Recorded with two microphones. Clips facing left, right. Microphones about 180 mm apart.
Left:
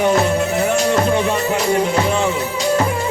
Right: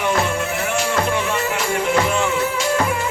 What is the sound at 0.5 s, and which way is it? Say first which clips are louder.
Music: left 5 dB; 35° left (ahead or behind).